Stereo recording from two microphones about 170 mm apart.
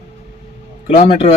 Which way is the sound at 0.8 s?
30° left (ahead or behind).